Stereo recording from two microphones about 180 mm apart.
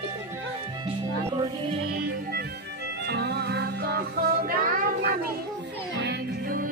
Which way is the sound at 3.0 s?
65° right (ahead or behind).